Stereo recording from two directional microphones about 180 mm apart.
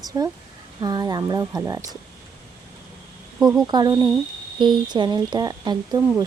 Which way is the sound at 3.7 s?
25° right (ahead or behind).